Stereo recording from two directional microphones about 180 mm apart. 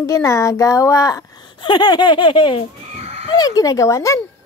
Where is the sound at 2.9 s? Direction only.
35° right (ahead or behind).